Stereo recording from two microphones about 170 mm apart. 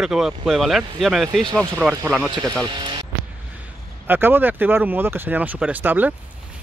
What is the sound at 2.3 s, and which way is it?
Speech, 25° right (ahead or behind).